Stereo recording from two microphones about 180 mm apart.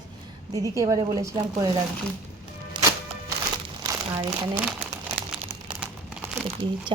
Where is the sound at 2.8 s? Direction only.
25° right (ahead or behind).